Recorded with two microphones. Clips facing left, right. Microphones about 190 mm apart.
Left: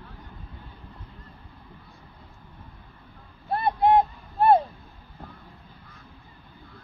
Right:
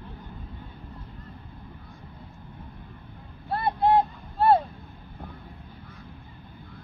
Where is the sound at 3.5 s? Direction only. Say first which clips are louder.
Left 2 dB; 20° left (ahead or behind).